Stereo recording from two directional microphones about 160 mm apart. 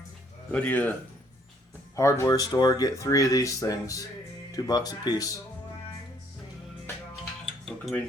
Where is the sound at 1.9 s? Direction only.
20° left (ahead or behind).